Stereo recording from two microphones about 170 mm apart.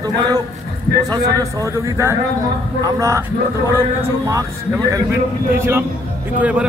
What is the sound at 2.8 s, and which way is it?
Speech, 20° right (ahead or behind).